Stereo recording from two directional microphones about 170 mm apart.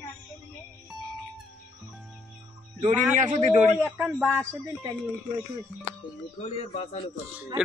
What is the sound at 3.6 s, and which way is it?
A man's voice, 10° right (ahead or behind).